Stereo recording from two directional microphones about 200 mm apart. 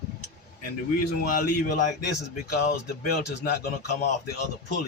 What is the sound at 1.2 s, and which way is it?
Speech, 45° left (ahead or behind).